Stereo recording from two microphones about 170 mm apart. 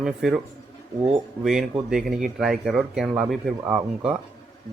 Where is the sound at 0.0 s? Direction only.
5° right (ahead or behind).